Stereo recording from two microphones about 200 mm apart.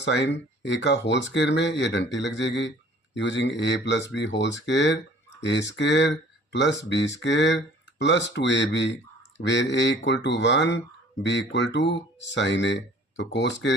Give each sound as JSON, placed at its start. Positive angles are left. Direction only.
{"t": 0.0, "sound": "speech", "side_deg": 60}